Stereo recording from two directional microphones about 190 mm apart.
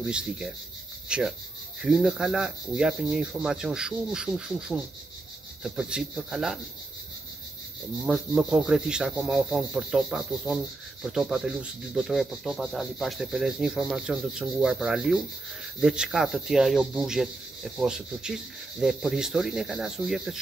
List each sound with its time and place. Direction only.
0.0 s rub: 5° right (ahead or behind)
1.0 s speech: 5° right (ahead or behind)
1.8 s rub: 5° right (ahead or behind)
8.4 s rub: 5° right (ahead or behind)